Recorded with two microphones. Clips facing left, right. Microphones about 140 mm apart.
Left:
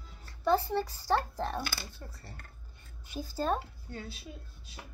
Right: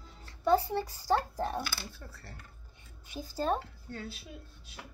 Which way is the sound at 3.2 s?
15° right (ahead or behind).